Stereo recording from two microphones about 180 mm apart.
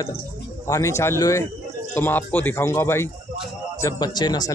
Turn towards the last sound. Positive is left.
turn(degrees=20)  # may be behind; listen again after turning